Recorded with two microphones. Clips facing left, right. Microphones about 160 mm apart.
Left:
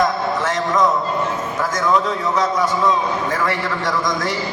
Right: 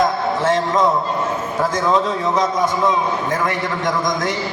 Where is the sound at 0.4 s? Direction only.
25° right (ahead or behind).